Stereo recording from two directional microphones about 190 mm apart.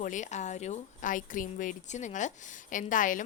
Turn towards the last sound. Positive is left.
turn(degrees=45)  # may be behind; listen again after turning